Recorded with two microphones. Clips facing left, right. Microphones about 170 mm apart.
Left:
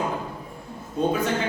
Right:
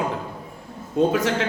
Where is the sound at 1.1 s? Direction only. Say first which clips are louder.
Right 2 dB; 90° right.